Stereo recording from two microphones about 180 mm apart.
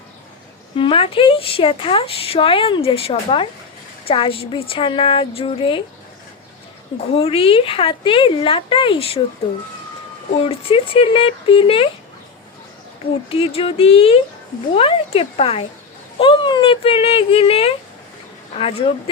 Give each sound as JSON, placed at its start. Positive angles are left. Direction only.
{"t": 0.8, "sound": "speech", "side_deg": 30}
{"t": 7.2, "sound": "a woman's voice", "side_deg": 30}
{"t": 10.5, "sound": "speech", "side_deg": 30}
{"t": 13.3, "sound": "speech", "side_deg": 30}